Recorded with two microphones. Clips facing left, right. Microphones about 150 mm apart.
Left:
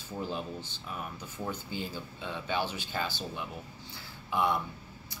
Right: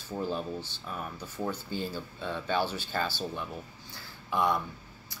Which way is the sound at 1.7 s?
15° left (ahead or behind).